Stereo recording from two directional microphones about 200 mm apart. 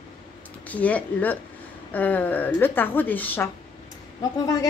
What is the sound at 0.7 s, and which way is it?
A woman's voice, 5° left (ahead or behind).